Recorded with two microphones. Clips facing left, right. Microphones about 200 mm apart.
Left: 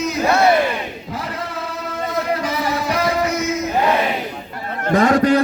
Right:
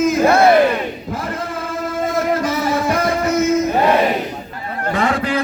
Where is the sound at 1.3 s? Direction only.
50° right (ahead or behind).